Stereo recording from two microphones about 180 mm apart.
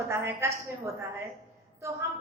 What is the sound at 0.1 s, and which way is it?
Speech, 15° right (ahead or behind).